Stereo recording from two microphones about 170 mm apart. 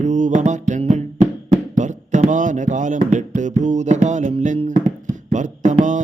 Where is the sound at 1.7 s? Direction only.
45° right (ahead or behind).